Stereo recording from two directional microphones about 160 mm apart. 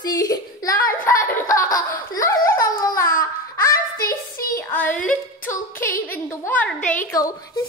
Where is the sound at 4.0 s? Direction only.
65° left (ahead or behind).